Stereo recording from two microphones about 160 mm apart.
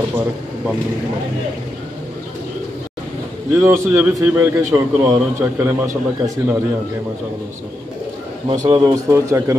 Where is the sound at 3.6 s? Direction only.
15° right (ahead or behind).